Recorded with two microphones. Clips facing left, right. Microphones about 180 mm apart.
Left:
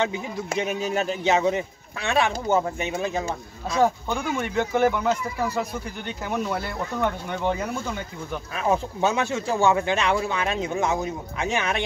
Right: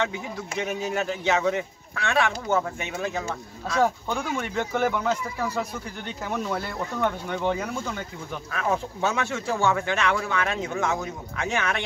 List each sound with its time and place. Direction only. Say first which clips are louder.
0.0 s speech: left 3 dB; 20° left (ahead or behind)
3.8 s speech: left 3 dB; centre (ahead or behind)
8.5 s speech: left 3 dB; 20° left (ahead or behind)